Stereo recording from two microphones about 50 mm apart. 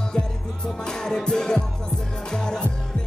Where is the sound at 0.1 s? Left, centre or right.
Centre.